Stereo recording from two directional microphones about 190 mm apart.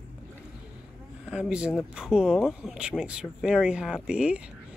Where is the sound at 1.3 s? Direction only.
5° right (ahead or behind).